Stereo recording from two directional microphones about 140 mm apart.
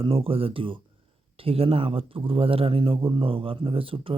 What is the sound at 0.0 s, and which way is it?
Speech, 40° right (ahead or behind).